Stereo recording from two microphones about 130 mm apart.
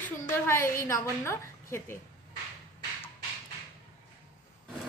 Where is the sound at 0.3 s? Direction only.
20° left (ahead or behind).